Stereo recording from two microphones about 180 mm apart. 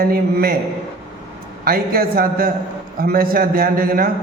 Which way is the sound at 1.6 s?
55° right (ahead or behind).